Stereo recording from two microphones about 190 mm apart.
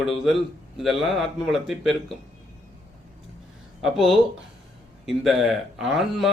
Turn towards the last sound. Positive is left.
turn(degrees=0)  # may be behind; listen again after turning